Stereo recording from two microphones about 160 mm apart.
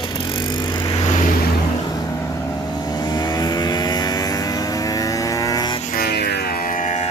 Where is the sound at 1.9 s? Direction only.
20° left (ahead or behind).